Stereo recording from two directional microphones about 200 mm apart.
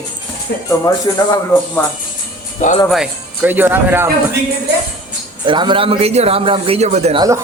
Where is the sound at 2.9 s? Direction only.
5° right (ahead or behind).